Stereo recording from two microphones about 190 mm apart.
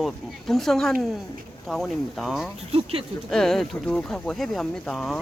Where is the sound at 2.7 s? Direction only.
30° right (ahead or behind).